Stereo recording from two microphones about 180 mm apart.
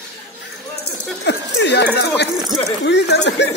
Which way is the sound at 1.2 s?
70° left (ahead or behind).